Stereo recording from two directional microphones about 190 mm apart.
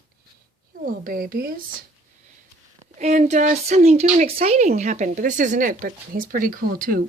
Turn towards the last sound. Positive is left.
turn(degrees=-45)  # may be behind; listen again after turning